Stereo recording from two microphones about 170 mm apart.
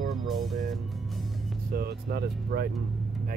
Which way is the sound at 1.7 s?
65° right (ahead or behind).